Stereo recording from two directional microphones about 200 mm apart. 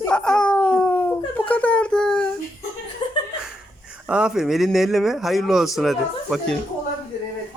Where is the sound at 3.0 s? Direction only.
25° left (ahead or behind).